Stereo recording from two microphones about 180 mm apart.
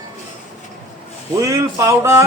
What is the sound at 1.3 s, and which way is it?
Speech, 15° right (ahead or behind).